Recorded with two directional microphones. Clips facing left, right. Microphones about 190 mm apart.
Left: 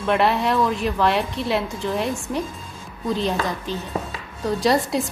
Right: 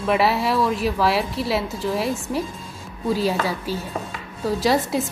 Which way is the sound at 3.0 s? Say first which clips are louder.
Right 1 dB; 5° right (ahead or behind).